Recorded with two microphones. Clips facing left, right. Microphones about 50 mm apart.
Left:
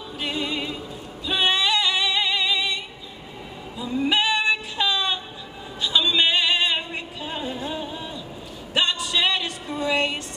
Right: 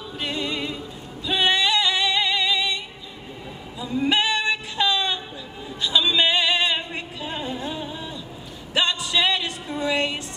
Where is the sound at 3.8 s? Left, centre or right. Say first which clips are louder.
Even; centre.